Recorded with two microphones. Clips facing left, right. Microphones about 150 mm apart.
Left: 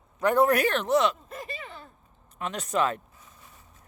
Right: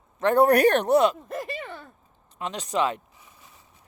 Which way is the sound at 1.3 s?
70° right (ahead or behind).